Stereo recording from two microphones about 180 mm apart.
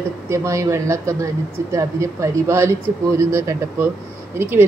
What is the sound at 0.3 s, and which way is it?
Speech, 15° right (ahead or behind).